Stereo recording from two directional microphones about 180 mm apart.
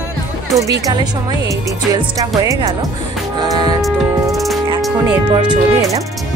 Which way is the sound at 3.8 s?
Centre (ahead or behind).